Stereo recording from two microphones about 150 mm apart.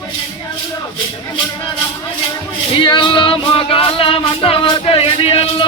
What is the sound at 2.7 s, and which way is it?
Music, 35° left (ahead or behind).